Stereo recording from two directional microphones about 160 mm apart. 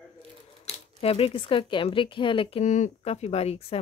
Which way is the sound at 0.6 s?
40° left (ahead or behind).